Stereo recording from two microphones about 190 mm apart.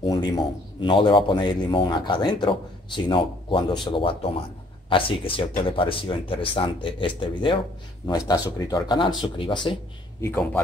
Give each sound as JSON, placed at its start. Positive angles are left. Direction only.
{"t": 0.0, "sound": "a sound", "side_deg": 20}
{"t": 0.7, "sound": "speech", "side_deg": 25}
{"t": 10.2, "sound": "a man's voice", "side_deg": 10}